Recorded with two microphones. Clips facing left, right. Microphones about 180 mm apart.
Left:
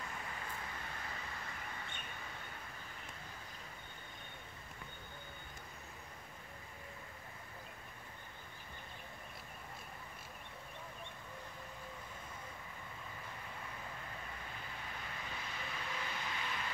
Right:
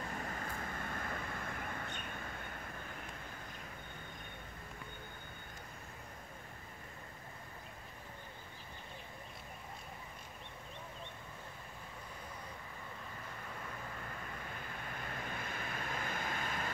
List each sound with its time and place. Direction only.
0.2 s vehicle: 45° right (ahead or behind)
15.0 s vehicle: 50° right (ahead or behind)